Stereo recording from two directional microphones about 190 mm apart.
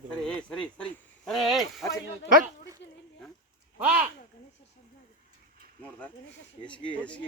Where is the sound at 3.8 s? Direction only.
5° right (ahead or behind).